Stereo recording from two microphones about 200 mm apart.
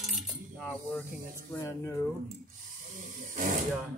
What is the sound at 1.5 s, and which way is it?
Speech, 15° left (ahead or behind).